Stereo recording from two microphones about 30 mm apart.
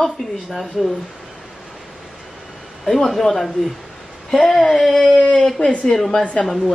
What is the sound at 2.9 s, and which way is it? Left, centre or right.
Speech, centre.